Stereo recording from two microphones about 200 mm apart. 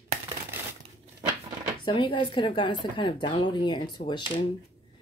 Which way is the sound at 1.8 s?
25° left (ahead or behind).